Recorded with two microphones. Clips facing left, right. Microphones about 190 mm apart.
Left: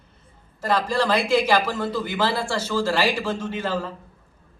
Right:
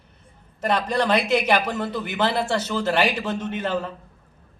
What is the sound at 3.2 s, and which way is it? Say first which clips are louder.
Speech: even; 25° left (ahead or behind).